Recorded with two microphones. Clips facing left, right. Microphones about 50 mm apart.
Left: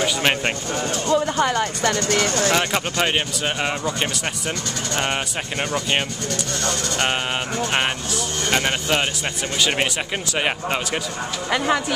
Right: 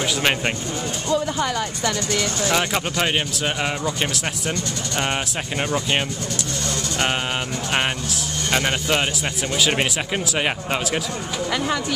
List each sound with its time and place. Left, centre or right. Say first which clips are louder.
0.0 s speech: left 1 dB; centre
1.1 s speech: left 2 dB; left
1.4 s speech: left 3 dB; left
1.8 s speech: left 3 dB; left
2.5 s speech: left 1 dB; centre
7.7 s speech: right 2 dB; centre
11.5 s speech: left 4 dB; centre